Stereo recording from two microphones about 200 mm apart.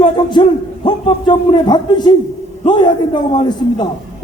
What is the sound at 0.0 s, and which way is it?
A man's voice, 20° left (ahead or behind).